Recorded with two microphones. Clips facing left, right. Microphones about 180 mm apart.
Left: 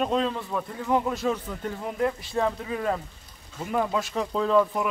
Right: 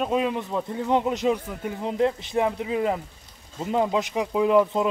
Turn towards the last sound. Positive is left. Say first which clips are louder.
# right 3 dB
turn(degrees=-20)  # may be behind; listen again after turning